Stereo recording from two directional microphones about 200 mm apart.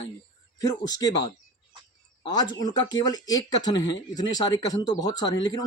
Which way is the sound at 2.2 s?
20° left (ahead or behind).